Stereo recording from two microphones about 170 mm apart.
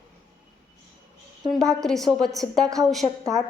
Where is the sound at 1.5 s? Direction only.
5° left (ahead or behind).